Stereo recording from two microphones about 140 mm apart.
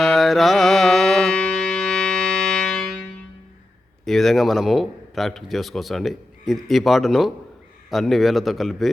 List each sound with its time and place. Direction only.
0.0 s music: centre (ahead or behind)
4.0 s a man's voice: centre (ahead or behind)